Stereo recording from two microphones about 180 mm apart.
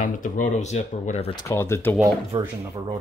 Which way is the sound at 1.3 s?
15° left (ahead or behind).